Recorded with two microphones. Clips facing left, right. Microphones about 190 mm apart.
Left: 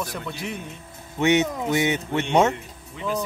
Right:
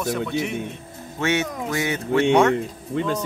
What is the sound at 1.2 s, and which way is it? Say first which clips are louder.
Music: left 3 dB; 20° left (ahead or behind).